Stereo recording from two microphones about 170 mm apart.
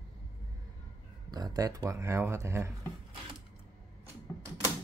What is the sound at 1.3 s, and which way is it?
Speech, 25° right (ahead or behind).